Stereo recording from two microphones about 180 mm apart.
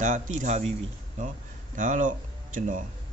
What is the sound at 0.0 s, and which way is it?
A man's voice, 45° right (ahead or behind).